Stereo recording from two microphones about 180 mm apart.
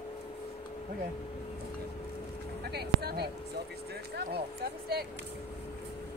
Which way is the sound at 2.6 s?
65° right (ahead or behind).